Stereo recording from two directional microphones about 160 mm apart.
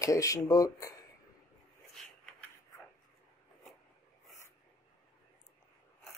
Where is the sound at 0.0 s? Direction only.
20° left (ahead or behind).